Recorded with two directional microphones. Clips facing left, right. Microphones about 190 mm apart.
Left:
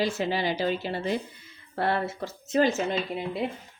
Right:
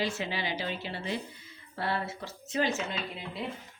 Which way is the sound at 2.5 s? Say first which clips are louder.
Left 7 dB; 45° left (ahead or behind).